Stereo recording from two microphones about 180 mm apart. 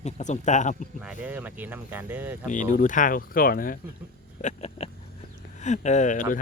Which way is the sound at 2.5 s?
45° left (ahead or behind).